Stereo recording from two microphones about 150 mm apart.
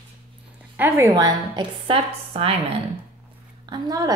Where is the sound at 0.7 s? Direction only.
15° right (ahead or behind); by 2.6 s 40° right (ahead or behind).